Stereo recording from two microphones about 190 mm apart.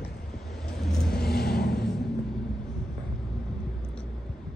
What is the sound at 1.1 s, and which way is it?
Vehicle, 55° left (ahead or behind).